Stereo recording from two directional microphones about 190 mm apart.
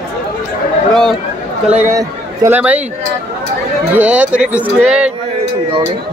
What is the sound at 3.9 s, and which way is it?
Speech, 5° right (ahead or behind).